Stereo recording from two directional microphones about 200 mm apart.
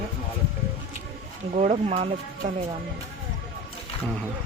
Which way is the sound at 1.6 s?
35° right (ahead or behind).